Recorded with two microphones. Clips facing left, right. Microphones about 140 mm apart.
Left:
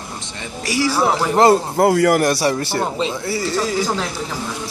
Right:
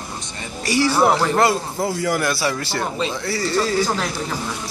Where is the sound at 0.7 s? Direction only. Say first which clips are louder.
Right 1 dB; 5° left (ahead or behind).